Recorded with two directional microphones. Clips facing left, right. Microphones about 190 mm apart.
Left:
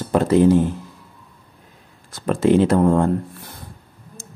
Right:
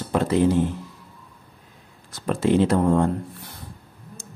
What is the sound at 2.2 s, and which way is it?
Speech, 50° left (ahead or behind).